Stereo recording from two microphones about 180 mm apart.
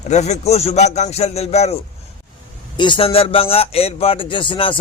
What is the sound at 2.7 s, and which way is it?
Speech, 25° left (ahead or behind).